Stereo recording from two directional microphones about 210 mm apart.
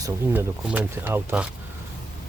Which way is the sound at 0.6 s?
5° right (ahead or behind).